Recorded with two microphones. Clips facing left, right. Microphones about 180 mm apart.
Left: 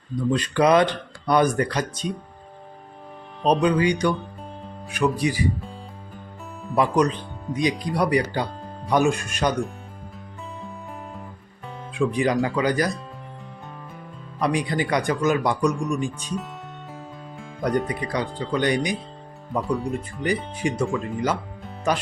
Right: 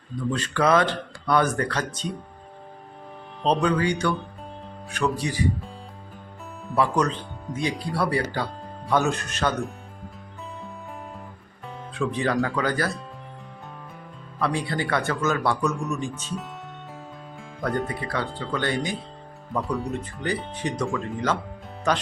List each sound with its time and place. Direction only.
0.3 s speech: 15° left (ahead or behind)
3.4 s speech: 15° left (ahead or behind)
6.7 s speech: 15° left (ahead or behind)
11.9 s speech: 15° left (ahead or behind)
14.3 s speech: 15° left (ahead or behind)
17.6 s speech: 15° left (ahead or behind)
19.6 s speech: 5° right (ahead or behind)
19.9 s speech: 10° left (ahead or behind)